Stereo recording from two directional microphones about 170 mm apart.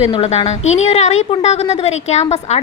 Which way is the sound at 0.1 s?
40° left (ahead or behind).